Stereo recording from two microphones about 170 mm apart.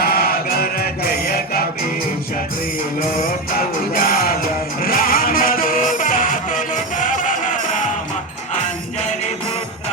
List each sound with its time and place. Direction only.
0.0 s chant: 65° left (ahead or behind)
3.9 s music: 60° left (ahead or behind)